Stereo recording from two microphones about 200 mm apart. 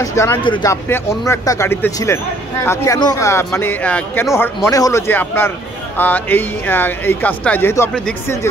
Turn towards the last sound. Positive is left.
turn(degrees=10)  # may be behind; listen again after turning